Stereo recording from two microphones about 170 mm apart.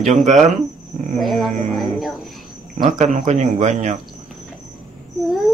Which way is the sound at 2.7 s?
45° right (ahead or behind).